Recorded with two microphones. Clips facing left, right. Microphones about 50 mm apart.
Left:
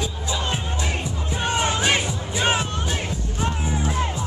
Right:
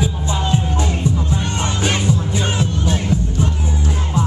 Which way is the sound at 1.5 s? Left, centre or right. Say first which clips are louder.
Left 2 dB; centre.